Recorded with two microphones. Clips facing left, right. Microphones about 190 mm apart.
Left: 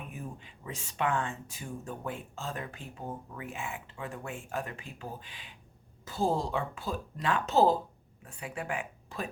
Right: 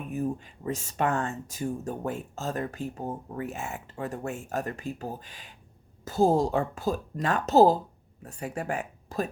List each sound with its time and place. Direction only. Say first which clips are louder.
0.1 s speech: right 13 dB; 45° right (ahead or behind)